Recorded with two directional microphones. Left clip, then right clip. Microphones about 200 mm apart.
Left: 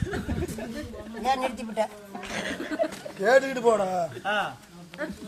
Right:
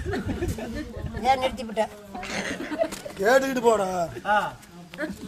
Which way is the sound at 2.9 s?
45° right (ahead or behind).